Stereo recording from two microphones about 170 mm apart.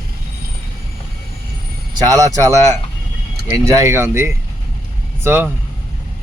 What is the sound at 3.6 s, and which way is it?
Speech, 15° right (ahead or behind).